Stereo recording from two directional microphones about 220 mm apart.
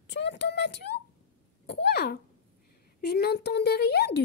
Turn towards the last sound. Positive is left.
turn(degrees=45)  # may be behind; listen again after turning